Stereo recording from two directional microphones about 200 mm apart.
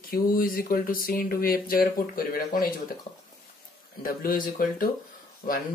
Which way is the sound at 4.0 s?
45° left (ahead or behind).